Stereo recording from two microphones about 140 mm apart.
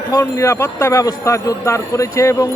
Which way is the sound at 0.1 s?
25° left (ahead or behind).